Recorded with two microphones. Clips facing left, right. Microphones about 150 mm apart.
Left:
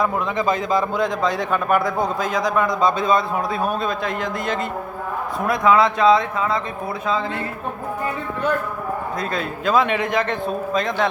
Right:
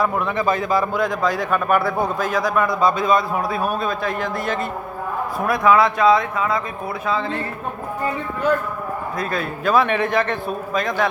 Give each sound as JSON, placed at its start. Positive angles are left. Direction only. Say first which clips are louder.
{"t": 0.0, "sound": "a man's voice", "louder": "right 1 dB", "side_deg": 20}
{"t": 9.3, "sound": "a man's voice", "louder": "right 1 dB", "side_deg": 20}